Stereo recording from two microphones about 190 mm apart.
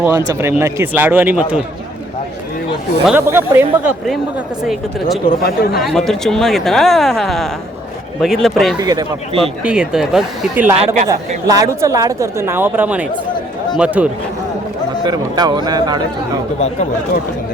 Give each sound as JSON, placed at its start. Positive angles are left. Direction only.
{"t": 0.0, "sound": "a woman's voice", "side_deg": -15}
{"t": 3.1, "sound": "a woman's voice", "side_deg": -10}
{"t": 5.2, "sound": "speech", "side_deg": 55}
{"t": 5.8, "sound": "speech", "side_deg": 0}
{"t": 8.8, "sound": "speech", "side_deg": -20}
{"t": 9.6, "sound": "a woman's voice", "side_deg": -5}
{"t": 15.0, "sound": "speech", "side_deg": -20}